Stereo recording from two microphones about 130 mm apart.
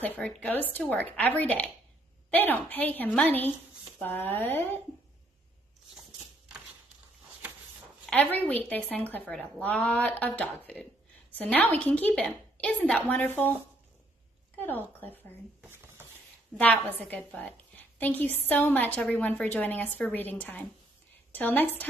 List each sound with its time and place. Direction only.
0.0 s a woman's voice: 10° left (ahead or behind)
8.1 s a woman's voice: 10° left (ahead or behind)
14.6 s a woman's voice: 15° left (ahead or behind)
15.6 s a sound: 15° right (ahead or behind)
16.5 s a woman's voice: 10° left (ahead or behind)